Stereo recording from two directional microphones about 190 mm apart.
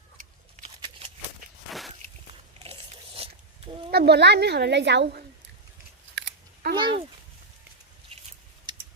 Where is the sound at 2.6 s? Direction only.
30° right (ahead or behind).